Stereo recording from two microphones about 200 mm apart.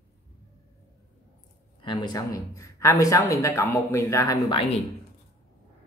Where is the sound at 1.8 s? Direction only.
20° left (ahead or behind).